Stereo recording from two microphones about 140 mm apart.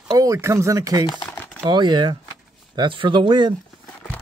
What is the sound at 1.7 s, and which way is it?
Speech, 35° right (ahead or behind).